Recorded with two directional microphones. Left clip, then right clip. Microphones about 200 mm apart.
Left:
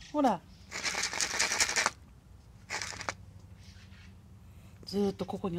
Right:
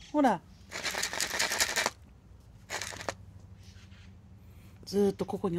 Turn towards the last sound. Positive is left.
turn(degrees=-15)  # may be behind; listen again after turning